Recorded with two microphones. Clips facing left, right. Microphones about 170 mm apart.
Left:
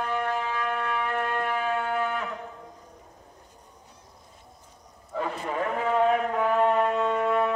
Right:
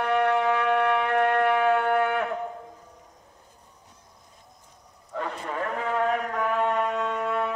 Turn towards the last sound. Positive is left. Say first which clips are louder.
# left 3 dB
turn(degrees=10)  # may be behind; listen again after turning